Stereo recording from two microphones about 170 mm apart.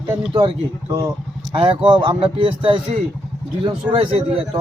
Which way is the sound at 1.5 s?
35° right (ahead or behind).